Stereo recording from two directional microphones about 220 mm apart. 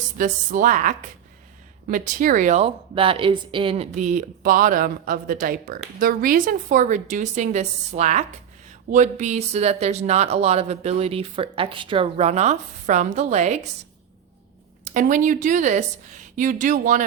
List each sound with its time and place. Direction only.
0.2 s speech: 35° right (ahead or behind)
14.9 s speech: 35° right (ahead or behind)